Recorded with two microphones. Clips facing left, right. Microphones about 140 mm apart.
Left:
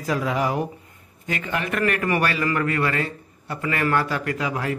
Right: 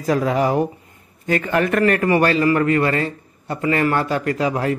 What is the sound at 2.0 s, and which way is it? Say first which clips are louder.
Speech: right 7 dB; 30° right (ahead or behind).